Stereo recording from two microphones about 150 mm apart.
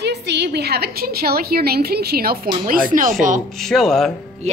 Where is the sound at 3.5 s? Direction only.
5° left (ahead or behind).